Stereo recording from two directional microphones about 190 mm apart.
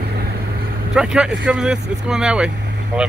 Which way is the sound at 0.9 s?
5° right (ahead or behind).